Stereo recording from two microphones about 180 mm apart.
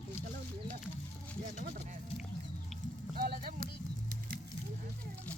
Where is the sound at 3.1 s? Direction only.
55° right (ahead or behind).